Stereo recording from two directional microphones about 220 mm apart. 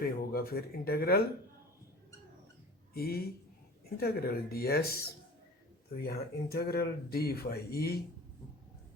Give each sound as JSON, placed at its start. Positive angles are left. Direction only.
{"t": 0.0, "sound": "speech", "side_deg": 45}
{"t": 2.9, "sound": "speech", "side_deg": 45}